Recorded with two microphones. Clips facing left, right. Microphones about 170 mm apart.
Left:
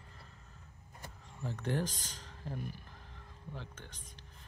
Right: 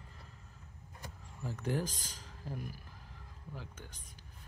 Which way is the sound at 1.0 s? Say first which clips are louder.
Left 1 dB; 10° right (ahead or behind).